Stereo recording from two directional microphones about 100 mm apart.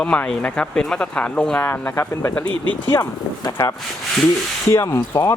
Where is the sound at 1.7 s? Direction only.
25° left (ahead or behind).